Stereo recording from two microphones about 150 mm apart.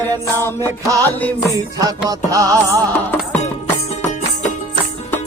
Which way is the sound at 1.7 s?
25° right (ahead or behind).